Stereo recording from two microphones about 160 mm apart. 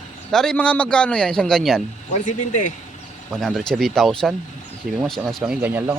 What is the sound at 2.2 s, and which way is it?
Speech, 55° left (ahead or behind).